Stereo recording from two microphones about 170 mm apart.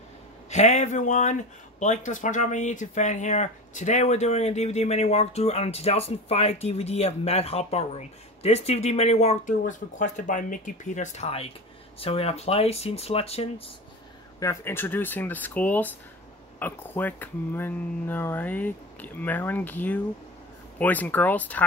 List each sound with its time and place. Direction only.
0.5 s speech: 40° left (ahead or behind)
14.4 s speech: 15° left (ahead or behind)